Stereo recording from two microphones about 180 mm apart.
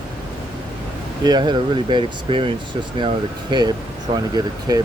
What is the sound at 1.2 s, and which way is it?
Speech, 25° right (ahead or behind).